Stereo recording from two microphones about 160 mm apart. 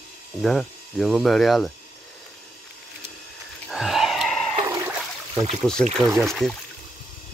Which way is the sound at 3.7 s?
5° right (ahead or behind).